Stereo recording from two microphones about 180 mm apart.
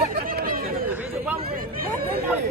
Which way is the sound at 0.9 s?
10° right (ahead or behind).